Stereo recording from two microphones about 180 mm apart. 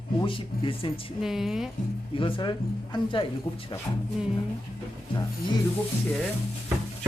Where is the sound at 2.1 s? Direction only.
25° left (ahead or behind).